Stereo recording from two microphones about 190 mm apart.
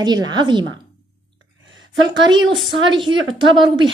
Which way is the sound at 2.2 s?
25° right (ahead or behind).